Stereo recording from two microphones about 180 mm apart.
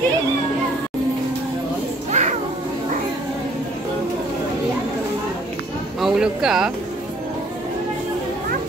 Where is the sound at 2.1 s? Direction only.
40° right (ahead or behind).